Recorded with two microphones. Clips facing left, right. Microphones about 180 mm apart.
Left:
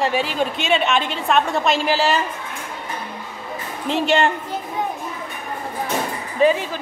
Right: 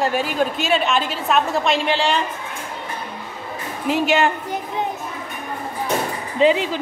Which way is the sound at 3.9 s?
5° right (ahead or behind).